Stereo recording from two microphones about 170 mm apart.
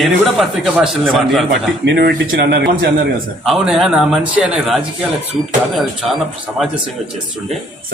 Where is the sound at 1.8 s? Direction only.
80° right.